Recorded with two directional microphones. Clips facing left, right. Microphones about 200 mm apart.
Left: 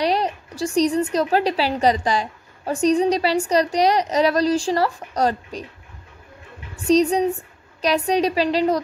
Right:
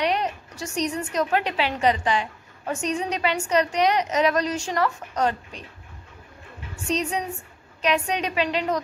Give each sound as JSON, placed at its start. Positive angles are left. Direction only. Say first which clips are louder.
{"t": 0.0, "sound": "a woman's voice", "louder": "left 3 dB", "side_deg": 35}
{"t": 6.9, "sound": "a woman's voice", "louder": "left 10 dB", "side_deg": 35}